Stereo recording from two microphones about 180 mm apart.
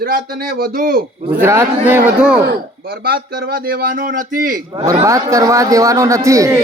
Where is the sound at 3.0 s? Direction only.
60° right (ahead or behind).